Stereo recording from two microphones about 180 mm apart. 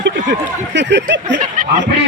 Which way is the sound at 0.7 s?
75° right (ahead or behind).